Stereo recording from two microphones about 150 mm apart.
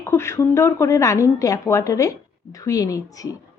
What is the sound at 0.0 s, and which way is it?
A woman's voice, 20° left (ahead or behind).